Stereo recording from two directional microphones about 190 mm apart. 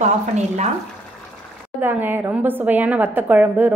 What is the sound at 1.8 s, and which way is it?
A woman's voice, 10° right (ahead or behind).